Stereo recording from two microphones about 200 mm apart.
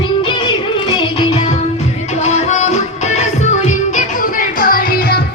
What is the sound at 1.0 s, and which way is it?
Music, 25° left (ahead or behind).